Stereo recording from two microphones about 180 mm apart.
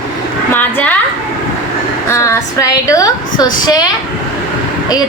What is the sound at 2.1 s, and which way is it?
A woman's voice, 15° left (ahead or behind).